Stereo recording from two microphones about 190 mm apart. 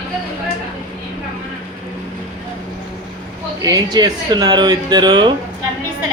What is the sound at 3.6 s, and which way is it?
Speech, 20° right (ahead or behind).